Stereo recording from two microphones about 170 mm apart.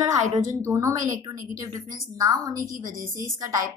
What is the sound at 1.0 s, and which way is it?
Speech, 50° right (ahead or behind).